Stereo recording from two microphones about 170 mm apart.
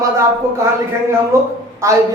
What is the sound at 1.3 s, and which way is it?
Speech, 15° right (ahead or behind).